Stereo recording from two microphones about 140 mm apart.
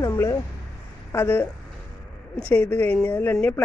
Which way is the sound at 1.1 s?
15° left (ahead or behind).